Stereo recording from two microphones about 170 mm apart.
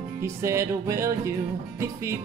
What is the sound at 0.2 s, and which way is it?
Music, 15° right (ahead or behind).